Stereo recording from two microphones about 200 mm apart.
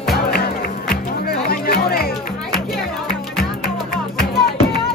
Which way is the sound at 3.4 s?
50° left (ahead or behind).